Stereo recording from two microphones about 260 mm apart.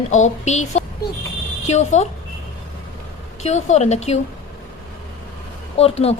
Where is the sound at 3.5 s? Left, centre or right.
Left.